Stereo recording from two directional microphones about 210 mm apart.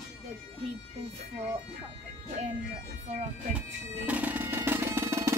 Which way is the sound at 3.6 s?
5° right (ahead or behind).